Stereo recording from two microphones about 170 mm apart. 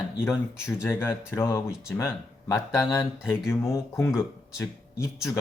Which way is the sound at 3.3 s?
15° left (ahead or behind).